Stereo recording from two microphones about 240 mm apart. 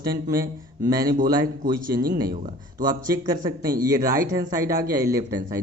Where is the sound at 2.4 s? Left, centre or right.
Right.